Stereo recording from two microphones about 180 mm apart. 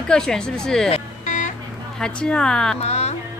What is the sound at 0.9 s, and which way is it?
Music, 45° left (ahead or behind).